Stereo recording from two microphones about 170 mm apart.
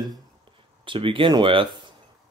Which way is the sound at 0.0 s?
25° right (ahead or behind).